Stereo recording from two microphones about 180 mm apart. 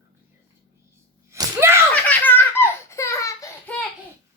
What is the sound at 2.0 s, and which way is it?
Giggle, 10° left (ahead or behind).